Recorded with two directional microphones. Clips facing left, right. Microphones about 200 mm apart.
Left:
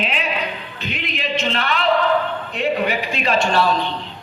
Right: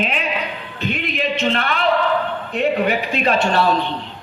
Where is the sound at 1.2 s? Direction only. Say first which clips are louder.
Right 2 dB; 50° right (ahead or behind).